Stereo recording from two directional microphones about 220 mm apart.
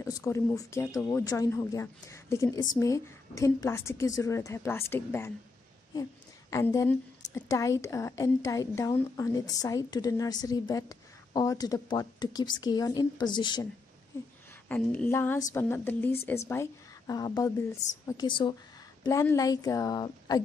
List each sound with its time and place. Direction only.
0.0 s a woman's voice: 10° left (ahead or behind)
6.5 s a woman's voice: 15° left (ahead or behind)
14.7 s a woman's voice: 5° left (ahead or behind)